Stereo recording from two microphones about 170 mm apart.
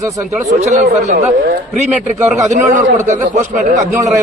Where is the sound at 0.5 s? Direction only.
40° right (ahead or behind).